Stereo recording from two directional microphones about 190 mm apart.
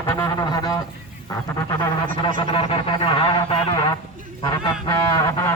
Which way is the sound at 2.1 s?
45° right (ahead or behind).